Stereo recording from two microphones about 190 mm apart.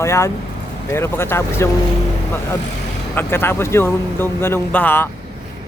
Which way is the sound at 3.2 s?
10° left (ahead or behind).